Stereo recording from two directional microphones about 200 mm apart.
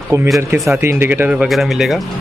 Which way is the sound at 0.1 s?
15° right (ahead or behind).